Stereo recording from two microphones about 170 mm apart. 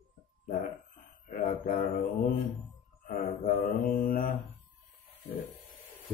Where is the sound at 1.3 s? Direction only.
50° left (ahead or behind).